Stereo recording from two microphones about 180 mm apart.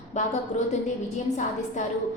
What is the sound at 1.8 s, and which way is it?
Speech, 45° left (ahead or behind).